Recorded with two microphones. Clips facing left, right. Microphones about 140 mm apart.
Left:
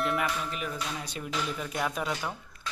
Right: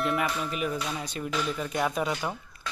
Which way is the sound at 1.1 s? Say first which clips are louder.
Right 3 dB; centre (ahead or behind).